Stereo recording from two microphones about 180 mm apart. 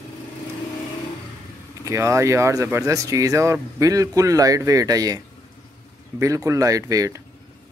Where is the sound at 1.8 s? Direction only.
15° right (ahead or behind).